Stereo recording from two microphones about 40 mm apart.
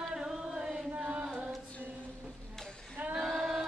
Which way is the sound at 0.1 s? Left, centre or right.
Centre.